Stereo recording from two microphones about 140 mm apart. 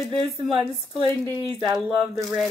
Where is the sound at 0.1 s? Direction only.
35° right (ahead or behind).